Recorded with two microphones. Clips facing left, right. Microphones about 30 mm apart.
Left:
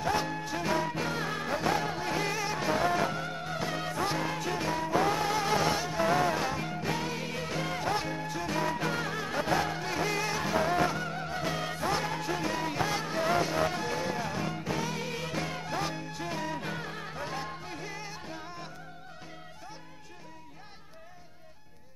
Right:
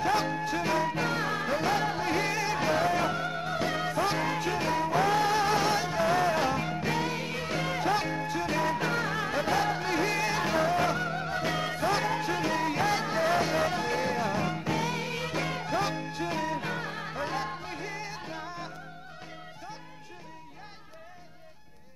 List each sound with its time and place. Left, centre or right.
0.2 s music: centre
5.1 s music: right
5.4 s music: centre